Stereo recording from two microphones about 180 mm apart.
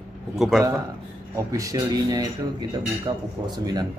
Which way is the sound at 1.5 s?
20° right (ahead or behind).